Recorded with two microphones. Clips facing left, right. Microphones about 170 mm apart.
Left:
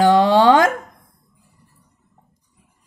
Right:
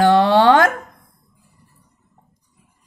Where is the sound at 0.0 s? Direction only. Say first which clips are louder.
Even; 15° left (ahead or behind).